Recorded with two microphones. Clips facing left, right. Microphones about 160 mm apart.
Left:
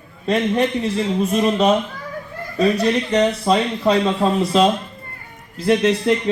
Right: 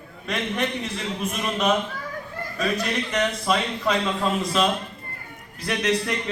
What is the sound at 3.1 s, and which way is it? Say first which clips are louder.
Speech: left 5 dB; 30° left (ahead or behind).